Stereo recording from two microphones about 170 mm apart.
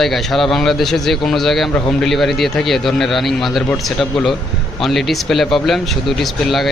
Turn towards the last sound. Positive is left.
turn(degrees=0)  # may be behind; listen again after turning